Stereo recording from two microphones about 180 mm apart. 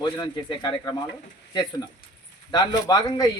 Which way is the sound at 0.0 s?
25° left (ahead or behind).